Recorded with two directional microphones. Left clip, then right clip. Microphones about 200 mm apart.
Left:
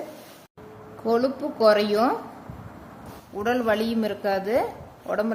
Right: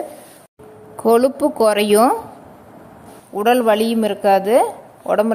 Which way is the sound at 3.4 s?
25° right (ahead or behind).